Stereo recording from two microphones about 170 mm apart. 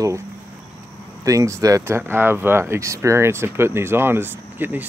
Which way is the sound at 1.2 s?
20° right (ahead or behind).